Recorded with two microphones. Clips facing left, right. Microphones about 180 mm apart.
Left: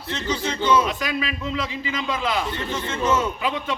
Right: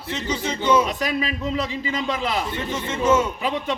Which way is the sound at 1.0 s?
35° right (ahead or behind).